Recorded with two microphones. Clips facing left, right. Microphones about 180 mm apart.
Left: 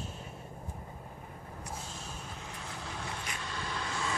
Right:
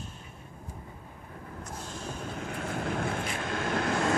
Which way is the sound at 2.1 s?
60° right (ahead or behind).